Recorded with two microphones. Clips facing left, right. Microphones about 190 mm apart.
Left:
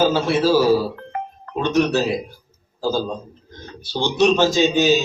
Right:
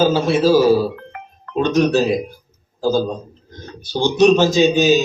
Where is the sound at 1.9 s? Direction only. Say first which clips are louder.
Right 4 dB; 15° right (ahead or behind).